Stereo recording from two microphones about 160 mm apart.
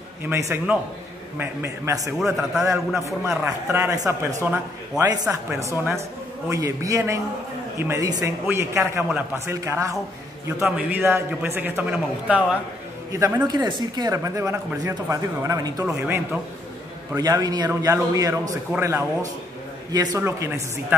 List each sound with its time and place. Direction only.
0.2 s a man's voice: 15° right (ahead or behind)
2.1 s a man's voice: centre (ahead or behind)
3.3 s speech: 20° right (ahead or behind)
4.5 s a man's voice: 10° right (ahead or behind)